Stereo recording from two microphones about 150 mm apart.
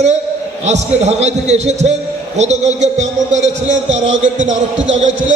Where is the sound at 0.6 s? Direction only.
50° right (ahead or behind).